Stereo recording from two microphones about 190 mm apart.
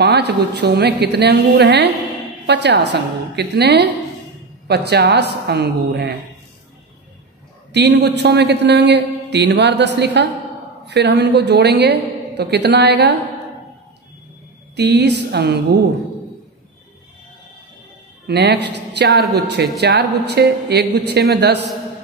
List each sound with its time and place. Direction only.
0.0 s a man's voice: 65° right (ahead or behind)
7.7 s a man's voice: 65° right (ahead or behind)
14.8 s a man's voice: 65° right (ahead or behind)
18.2 s a man's voice: 60° right (ahead or behind)
19.0 s a man's voice: centre (ahead or behind)
19.4 s a man's voice: 60° right (ahead or behind)